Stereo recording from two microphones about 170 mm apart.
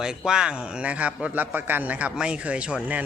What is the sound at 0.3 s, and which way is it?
A man's voice, 5° right (ahead or behind).